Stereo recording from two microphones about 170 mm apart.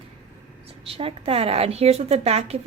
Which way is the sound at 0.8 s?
35° right (ahead or behind).